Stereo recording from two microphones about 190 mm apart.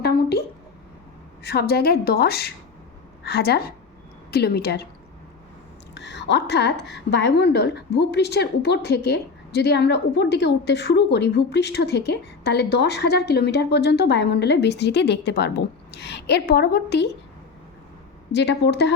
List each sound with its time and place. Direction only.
0.0 s a sound: 55° left (ahead or behind)
1.4 s a woman's voice: 55° left (ahead or behind)
5.9 s a woman's voice: 65° left (ahead or behind)
18.3 s a woman's voice: 65° left (ahead or behind)